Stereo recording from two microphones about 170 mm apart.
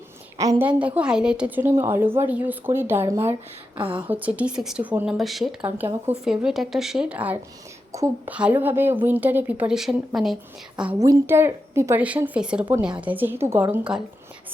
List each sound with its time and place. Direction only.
0.3 s a woman's voice: 20° right (ahead or behind)
0.7 s a woman's voice: 10° right (ahead or behind)
3.8 s a woman's voice: 30° right (ahead or behind)
4.1 s a woman's voice: 10° right (ahead or behind)
11.0 s a woman's voice: 15° right (ahead or behind)